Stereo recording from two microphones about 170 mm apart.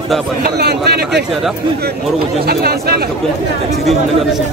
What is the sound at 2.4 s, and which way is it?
Speech, 65° right (ahead or behind).